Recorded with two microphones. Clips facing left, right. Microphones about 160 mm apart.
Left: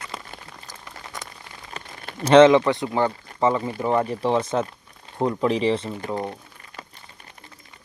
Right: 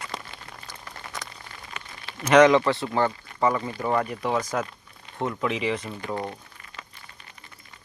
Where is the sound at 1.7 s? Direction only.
50° left (ahead or behind).